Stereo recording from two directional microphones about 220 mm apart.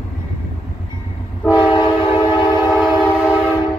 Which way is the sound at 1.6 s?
20° left (ahead or behind).